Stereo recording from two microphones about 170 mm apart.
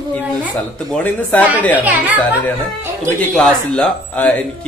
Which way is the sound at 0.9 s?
10° left (ahead or behind).